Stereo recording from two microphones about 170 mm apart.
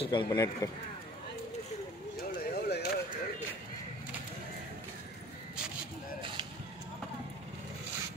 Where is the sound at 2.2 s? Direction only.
60° left (ahead or behind).